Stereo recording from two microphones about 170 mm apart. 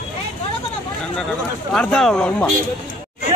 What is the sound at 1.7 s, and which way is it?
Speech, 5° left (ahead or behind).